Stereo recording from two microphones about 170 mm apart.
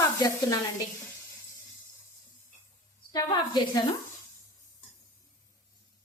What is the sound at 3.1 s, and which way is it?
Speech, 25° left (ahead or behind).